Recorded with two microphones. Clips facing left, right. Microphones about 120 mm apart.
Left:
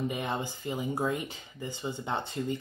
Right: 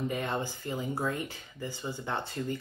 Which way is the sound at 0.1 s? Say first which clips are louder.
Right 1 dB; 15° left (ahead or behind).